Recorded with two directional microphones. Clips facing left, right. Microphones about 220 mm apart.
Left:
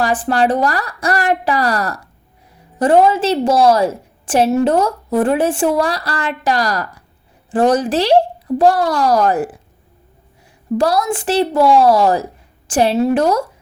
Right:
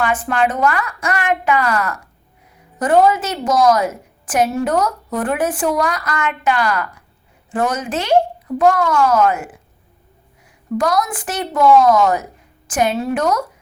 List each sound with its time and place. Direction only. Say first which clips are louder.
0.0 s a woman's voice: left 2 dB; 35° left (ahead or behind)
10.8 s a woman's voice: left 2 dB; 30° left (ahead or behind)